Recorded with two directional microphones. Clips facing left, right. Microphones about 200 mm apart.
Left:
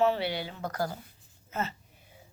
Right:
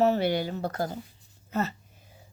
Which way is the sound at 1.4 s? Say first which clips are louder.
Right 5 dB; 40° right (ahead or behind).